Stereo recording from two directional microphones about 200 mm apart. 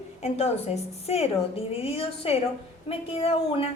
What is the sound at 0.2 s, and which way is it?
A woman's voice, 30° left (ahead or behind).